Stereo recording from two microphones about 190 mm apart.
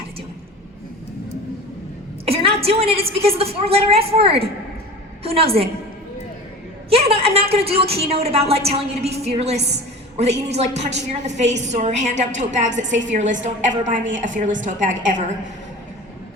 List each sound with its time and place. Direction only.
2.2 s a sound: 30° right (ahead or behind)
2.6 s a woman's voice: 30° right (ahead or behind)
6.9 s a woman's voice: 30° right (ahead or behind)